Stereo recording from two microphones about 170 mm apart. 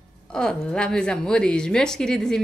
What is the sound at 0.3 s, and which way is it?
A woman's voice, 5° left (ahead or behind).